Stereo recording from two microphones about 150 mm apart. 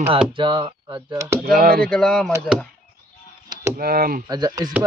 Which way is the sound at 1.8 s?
5° left (ahead or behind).